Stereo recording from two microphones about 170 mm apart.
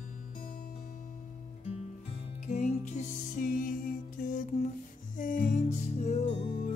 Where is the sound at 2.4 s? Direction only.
45° left (ahead or behind).